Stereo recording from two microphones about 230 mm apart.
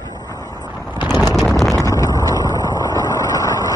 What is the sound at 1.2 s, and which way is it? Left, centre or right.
Clip-clop, centre.